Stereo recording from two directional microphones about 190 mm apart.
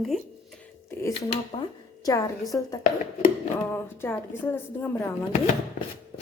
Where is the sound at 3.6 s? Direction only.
10° left (ahead or behind).